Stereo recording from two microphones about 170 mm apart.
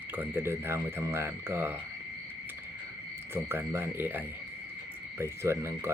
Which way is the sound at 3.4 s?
15° right (ahead or behind).